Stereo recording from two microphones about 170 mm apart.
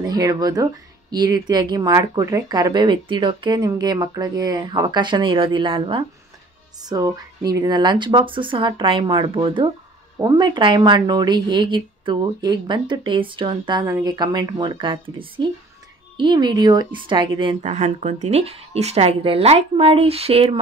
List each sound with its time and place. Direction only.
0.0 s speech: 20° right (ahead or behind)
17.6 s speech: 45° right (ahead or behind)